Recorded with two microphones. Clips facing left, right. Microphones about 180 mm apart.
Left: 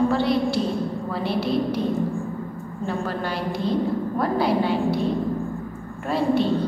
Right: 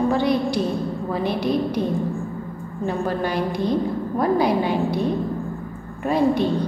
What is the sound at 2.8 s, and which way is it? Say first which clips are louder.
A woman's voice: right 4 dB; 15° right (ahead or behind).